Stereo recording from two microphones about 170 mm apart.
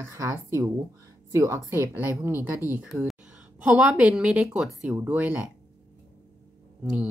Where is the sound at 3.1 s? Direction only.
5° right (ahead or behind).